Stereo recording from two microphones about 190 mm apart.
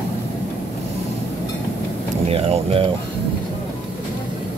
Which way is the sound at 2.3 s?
30° right (ahead or behind).